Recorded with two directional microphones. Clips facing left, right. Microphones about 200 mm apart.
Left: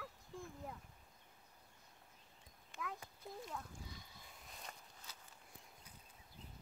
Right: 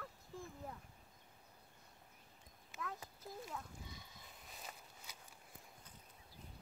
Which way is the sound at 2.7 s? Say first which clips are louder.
Even; centre (ahead or behind).